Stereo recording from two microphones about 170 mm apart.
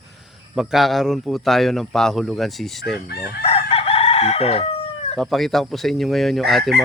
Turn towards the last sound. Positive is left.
turn(degrees=0)  # may be behind; listen again after turning